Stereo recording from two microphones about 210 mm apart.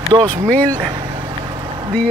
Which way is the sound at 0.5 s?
5° left (ahead or behind).